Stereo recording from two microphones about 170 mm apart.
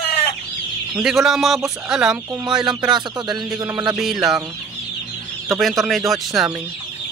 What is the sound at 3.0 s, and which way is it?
Music, 25° right (ahead or behind).